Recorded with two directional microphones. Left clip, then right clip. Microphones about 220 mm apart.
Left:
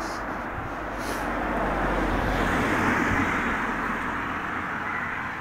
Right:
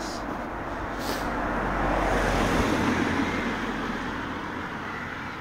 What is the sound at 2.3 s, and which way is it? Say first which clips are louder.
Vehicle: even; 45° right (ahead or behind).